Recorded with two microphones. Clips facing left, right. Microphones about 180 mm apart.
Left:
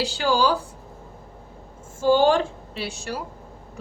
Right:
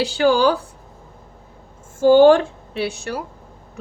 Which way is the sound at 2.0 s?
55° right (ahead or behind).